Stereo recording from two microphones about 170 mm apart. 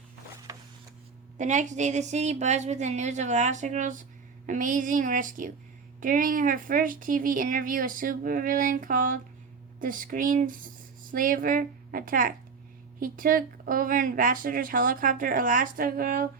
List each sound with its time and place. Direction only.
1.4 s speech: 45° right (ahead or behind)